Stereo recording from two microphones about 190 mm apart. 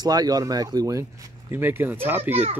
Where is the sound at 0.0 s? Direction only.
20° right (ahead or behind).